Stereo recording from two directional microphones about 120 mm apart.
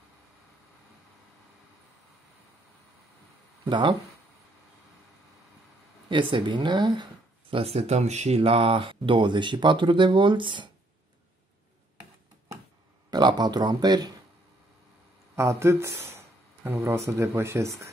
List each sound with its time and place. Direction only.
3.6 s speech: 40° right (ahead or behind)
6.0 s speech: 45° right (ahead or behind)
7.5 s speech: 60° right (ahead or behind); by 10.7 s 40° right (ahead or behind)
13.1 s speech: 35° right (ahead or behind)
15.3 s speech: 25° right (ahead or behind)